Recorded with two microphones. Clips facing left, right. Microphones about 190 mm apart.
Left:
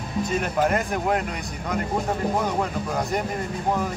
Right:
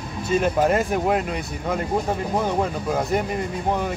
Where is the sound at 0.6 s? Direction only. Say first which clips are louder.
Right 3 dB; 20° right (ahead or behind).